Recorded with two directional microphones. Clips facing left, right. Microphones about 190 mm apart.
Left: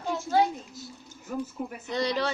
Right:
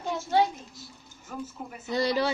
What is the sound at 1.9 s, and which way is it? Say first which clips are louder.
Speech: right 2 dB; 5° right (ahead or behind).